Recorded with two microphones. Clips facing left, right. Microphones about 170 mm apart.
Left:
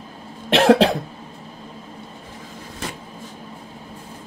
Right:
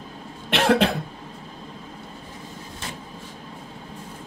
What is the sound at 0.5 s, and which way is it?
Cough, 35° left (ahead or behind).